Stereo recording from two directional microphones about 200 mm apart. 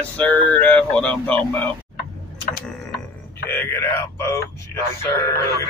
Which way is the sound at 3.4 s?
10° left (ahead or behind).